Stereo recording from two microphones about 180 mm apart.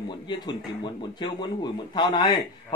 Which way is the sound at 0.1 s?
25° left (ahead or behind).